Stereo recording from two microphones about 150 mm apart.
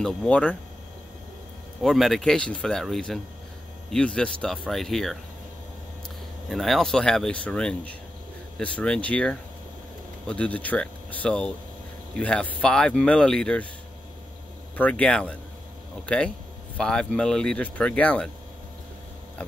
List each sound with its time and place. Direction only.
0.0 s speech: 5° left (ahead or behind)
1.8 s speech: centre (ahead or behind)
6.5 s speech: centre (ahead or behind)
14.8 s speech: 10° left (ahead or behind)
16.7 s speech: 5° left (ahead or behind)